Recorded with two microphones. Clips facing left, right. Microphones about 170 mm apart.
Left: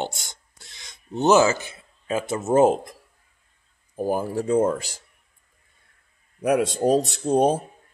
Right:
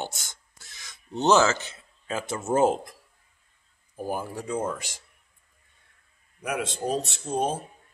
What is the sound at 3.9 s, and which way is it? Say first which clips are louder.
Speech: left 7 dB; 35° left (ahead or behind).